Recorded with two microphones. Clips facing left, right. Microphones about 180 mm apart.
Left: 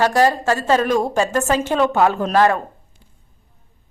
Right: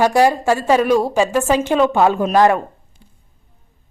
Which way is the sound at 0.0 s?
10° right (ahead or behind).